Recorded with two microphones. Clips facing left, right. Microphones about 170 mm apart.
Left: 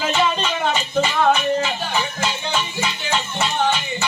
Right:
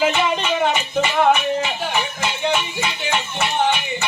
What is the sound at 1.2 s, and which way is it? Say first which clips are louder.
Music: right 2 dB; 20° right (ahead or behind).